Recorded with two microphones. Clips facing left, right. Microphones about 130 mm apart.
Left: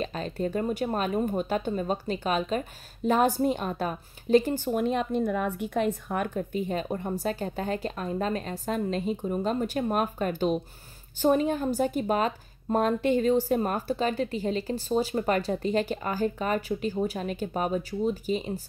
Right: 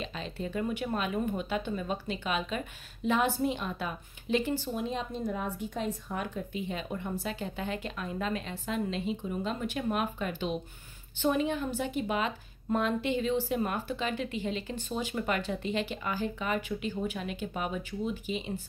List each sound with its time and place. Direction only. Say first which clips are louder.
0.0 s speech: left 7 dB; 45° left (ahead or behind)
4.6 s speech: left 7 dB; 60° left (ahead or behind); by 18.6 s 40° left (ahead or behind)